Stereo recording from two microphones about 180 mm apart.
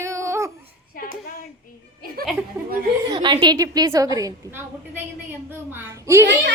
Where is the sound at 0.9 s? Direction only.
50° left (ahead or behind).